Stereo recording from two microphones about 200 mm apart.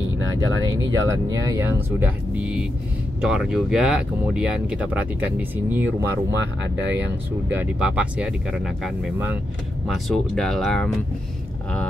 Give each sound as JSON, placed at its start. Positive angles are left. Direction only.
{"t": 0.2, "sound": "speech", "side_deg": -75}
{"t": 1.1, "sound": "speech", "side_deg": -15}
{"t": 6.3, "sound": "speech", "side_deg": -65}
{"t": 7.4, "sound": "speech", "side_deg": -10}